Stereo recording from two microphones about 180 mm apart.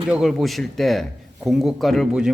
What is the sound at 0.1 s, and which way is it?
Speech, centre (ahead or behind).